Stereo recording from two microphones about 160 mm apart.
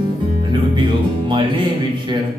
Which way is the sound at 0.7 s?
30° right (ahead or behind).